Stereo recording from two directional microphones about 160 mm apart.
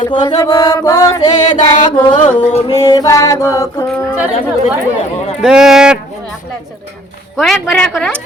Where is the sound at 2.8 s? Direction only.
25° left (ahead or behind).